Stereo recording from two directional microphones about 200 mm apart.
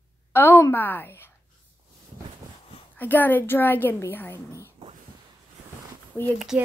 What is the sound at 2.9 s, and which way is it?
A woman's voice, 10° left (ahead or behind).